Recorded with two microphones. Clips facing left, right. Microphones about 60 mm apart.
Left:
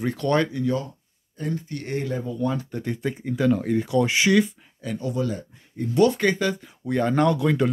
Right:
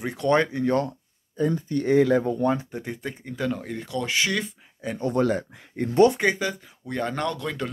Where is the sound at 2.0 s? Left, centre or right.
Right.